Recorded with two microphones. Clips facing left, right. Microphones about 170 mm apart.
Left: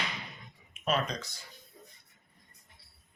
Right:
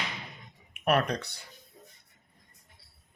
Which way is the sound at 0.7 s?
65° right (ahead or behind).